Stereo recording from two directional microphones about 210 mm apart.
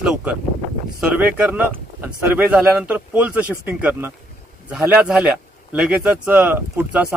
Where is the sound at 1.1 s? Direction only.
5° right (ahead or behind).